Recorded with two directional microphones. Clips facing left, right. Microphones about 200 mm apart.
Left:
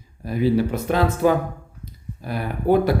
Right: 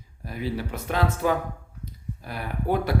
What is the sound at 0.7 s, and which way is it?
Speech, 35° left (ahead or behind).